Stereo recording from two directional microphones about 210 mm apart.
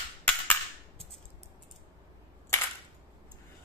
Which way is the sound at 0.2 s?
5° left (ahead or behind).